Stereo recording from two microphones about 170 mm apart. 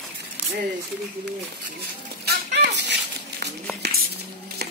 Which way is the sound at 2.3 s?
90° right.